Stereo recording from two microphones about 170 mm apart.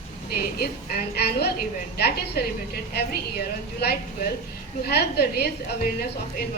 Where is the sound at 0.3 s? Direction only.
65° left (ahead or behind).